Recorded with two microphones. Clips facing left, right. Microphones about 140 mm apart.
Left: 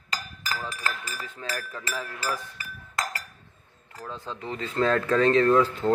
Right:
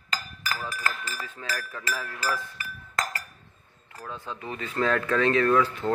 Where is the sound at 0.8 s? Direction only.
25° left (ahead or behind).